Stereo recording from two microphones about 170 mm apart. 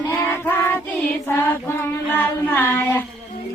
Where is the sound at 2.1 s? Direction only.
10° left (ahead or behind).